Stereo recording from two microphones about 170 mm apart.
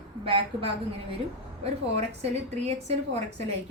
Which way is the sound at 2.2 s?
40° right (ahead or behind).